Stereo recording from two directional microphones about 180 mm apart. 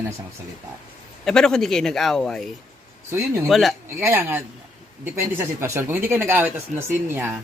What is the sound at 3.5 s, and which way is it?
Speech, centre (ahead or behind).